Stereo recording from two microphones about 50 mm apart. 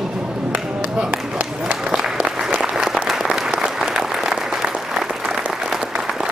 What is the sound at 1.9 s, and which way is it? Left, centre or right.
Applause, centre.